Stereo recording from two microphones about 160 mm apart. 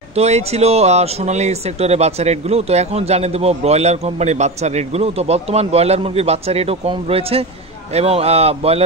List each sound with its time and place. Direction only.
0.1 s speech: 40° right (ahead or behind)